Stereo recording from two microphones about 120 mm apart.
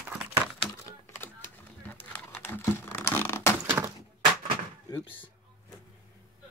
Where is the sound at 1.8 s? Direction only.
15° left (ahead or behind).